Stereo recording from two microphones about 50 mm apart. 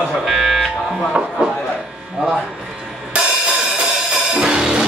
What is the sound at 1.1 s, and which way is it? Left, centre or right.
Music, centre.